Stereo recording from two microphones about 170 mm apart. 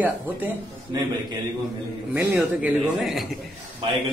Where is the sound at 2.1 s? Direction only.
10° right (ahead or behind).